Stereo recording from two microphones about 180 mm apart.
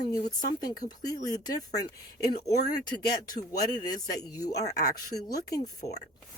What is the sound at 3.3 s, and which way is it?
Speech, 20° left (ahead or behind).